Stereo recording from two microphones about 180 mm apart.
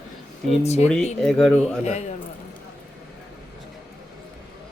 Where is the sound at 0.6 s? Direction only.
35° left (ahead or behind).